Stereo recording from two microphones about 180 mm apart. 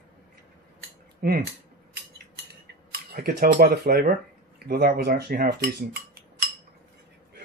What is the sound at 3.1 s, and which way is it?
Speech, 60° right (ahead or behind).